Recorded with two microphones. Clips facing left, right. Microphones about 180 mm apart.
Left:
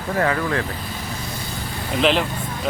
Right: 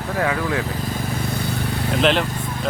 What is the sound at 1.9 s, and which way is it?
Speech, centre (ahead or behind).